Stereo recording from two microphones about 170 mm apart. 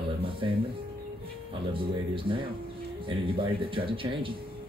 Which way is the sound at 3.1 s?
30° right (ahead or behind).